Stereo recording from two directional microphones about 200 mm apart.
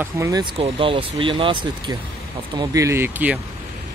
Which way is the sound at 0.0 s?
15° right (ahead or behind).